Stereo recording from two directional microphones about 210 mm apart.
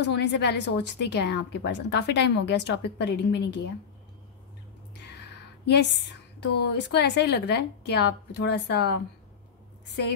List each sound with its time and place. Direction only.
0.0 s a woman's voice: 55° left (ahead or behind)
5.0 s a sound: 55° left (ahead or behind)
6.4 s a woman's voice: 50° left (ahead or behind)